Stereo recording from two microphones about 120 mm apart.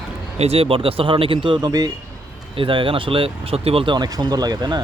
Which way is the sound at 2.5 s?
45° right (ahead or behind).